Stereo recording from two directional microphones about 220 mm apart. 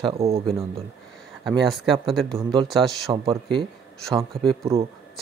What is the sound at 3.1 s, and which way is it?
Speech, 20° right (ahead or behind).